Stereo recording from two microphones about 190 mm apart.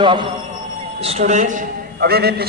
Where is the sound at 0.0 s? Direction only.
25° right (ahead or behind).